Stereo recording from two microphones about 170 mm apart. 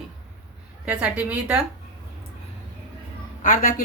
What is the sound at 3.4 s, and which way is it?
Speech, 55° left (ahead or behind).